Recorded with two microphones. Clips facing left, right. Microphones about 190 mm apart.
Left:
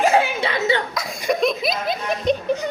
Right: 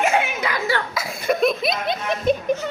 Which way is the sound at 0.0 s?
35° left (ahead or behind).